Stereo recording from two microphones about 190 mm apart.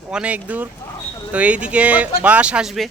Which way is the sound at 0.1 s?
5° right (ahead or behind).